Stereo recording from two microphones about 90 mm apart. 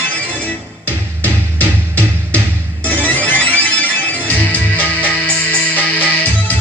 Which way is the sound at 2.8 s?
20° left (ahead or behind).